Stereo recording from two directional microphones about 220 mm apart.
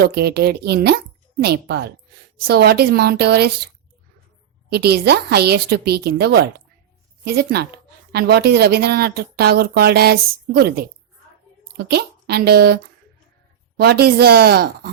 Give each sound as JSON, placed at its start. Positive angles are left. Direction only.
{"t": 0.0, "sound": "speech", "side_deg": -45}
{"t": 4.7, "sound": "speech", "side_deg": -45}